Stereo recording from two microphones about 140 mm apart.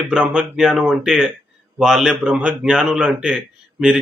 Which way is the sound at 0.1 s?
5° right (ahead or behind).